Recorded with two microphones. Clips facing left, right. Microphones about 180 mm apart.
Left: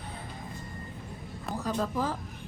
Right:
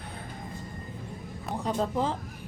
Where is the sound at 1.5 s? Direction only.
25° right (ahead or behind).